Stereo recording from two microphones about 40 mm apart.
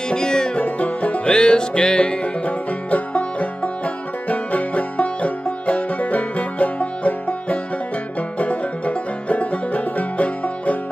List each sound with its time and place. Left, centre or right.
0.1 s music: centre
0.6 s music: left
1.3 s music: left